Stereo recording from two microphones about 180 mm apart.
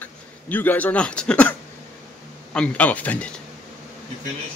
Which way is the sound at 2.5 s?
10° left (ahead or behind).